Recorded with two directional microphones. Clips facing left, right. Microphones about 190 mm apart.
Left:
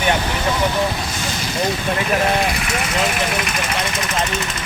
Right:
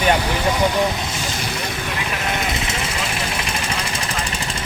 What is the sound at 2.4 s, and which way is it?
Speech, 25° right (ahead or behind).